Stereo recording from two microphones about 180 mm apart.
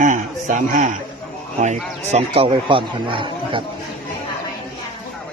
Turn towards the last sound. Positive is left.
turn(degrees=-30)  # may be behind; listen again after turning